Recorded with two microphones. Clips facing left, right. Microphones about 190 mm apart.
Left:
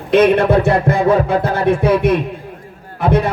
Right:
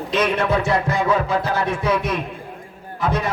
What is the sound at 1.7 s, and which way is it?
Music, 55° left (ahead or behind).